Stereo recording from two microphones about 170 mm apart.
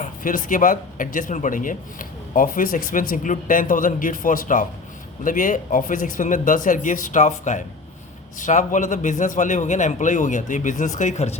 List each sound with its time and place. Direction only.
0.0 s speech: 50° left (ahead or behind)